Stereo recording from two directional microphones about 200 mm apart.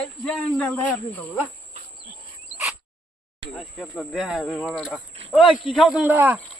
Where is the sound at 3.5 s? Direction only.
5° left (ahead or behind).